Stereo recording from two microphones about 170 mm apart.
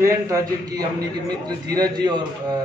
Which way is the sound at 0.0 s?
20° right (ahead or behind).